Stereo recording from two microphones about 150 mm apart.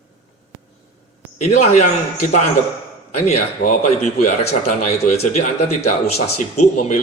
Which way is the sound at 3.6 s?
65° left (ahead or behind).